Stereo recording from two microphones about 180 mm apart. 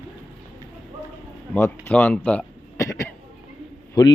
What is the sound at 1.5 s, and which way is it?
Speech, 10° left (ahead or behind).